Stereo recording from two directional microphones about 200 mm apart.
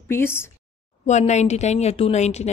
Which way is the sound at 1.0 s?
35° left (ahead or behind).